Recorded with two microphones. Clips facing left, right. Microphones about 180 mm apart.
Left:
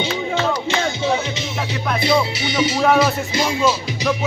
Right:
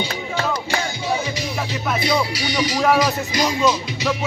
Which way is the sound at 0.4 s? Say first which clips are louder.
Left 1 dB; 20° left (ahead or behind).